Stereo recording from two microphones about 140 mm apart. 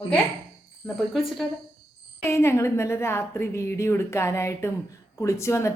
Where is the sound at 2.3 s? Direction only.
20° left (ahead or behind).